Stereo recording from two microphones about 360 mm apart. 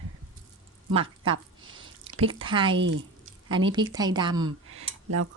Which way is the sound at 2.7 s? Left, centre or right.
Right.